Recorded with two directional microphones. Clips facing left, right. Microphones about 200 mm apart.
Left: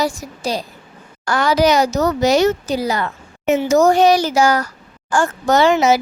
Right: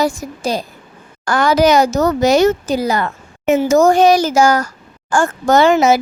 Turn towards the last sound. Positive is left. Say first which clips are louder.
# right 2 dB
turn(degrees=-50)  # may be behind; listen again after turning